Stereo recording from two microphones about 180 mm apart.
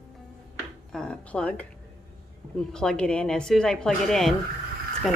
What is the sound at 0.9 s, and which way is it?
A woman's voice, 5° left (ahead or behind).